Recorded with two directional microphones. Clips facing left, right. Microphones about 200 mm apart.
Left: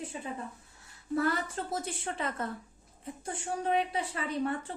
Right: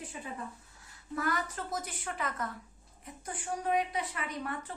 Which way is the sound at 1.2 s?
30° left (ahead or behind).